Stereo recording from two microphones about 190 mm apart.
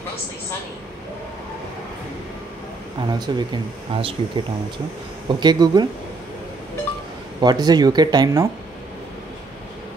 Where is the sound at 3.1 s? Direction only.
20° right (ahead or behind).